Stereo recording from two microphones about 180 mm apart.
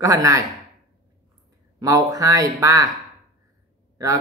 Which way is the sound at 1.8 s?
20° right (ahead or behind).